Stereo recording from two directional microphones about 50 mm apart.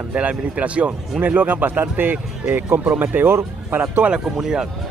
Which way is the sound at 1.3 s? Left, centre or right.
Right.